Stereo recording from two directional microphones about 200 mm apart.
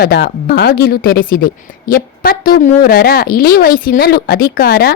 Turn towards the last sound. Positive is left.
turn(degrees=50)  # may be behind; listen again after turning